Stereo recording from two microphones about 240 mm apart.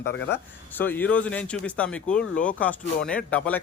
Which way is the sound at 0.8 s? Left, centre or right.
Centre.